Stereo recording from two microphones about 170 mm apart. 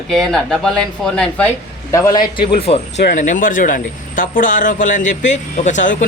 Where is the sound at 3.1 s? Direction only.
50° left (ahead or behind).